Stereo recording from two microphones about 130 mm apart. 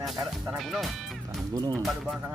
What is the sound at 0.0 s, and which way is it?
Music, centre (ahead or behind).